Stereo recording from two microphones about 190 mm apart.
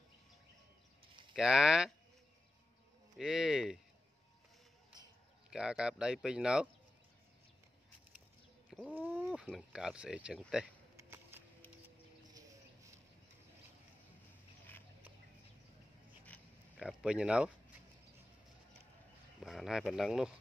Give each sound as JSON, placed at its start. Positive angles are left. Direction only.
{"t": 1.0, "sound": "a sound", "side_deg": -25}
{"t": 1.3, "sound": "speech", "side_deg": -5}
{"t": 3.2, "sound": "speech", "side_deg": -5}
{"t": 5.5, "sound": "speech", "side_deg": -5}
{"t": 8.6, "sound": "chicken", "side_deg": -5}
{"t": 9.3, "sound": "speech", "side_deg": -5}
{"t": 11.0, "sound": "a sound", "side_deg": -15}
{"t": 16.7, "sound": "speech", "side_deg": -5}
{"t": 19.4, "sound": "speech", "side_deg": 0}